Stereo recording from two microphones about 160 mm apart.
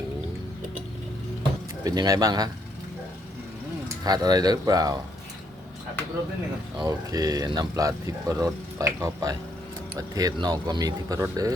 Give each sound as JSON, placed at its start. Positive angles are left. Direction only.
{"t": 1.8, "sound": "speech", "side_deg": -25}
{"t": 3.8, "sound": "speech", "side_deg": -25}
{"t": 6.8, "sound": "speech", "side_deg": -25}